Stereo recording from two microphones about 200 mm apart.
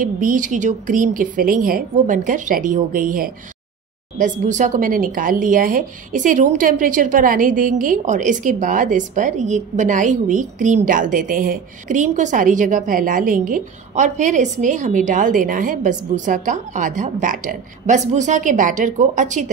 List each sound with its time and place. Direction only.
0.0 s a woman's voice: 40° right (ahead or behind)